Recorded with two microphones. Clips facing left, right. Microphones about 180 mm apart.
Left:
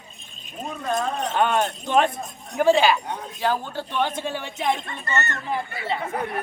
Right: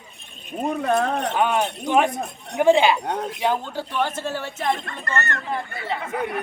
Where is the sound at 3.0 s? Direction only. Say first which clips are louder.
Right 6 dB; 70° right (ahead or behind).